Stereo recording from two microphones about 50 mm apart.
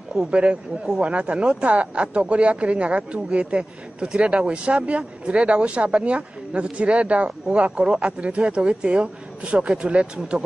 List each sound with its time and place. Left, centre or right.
0.3 s speech: right